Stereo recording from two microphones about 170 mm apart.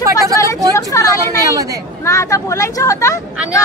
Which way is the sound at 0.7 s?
20° left (ahead or behind).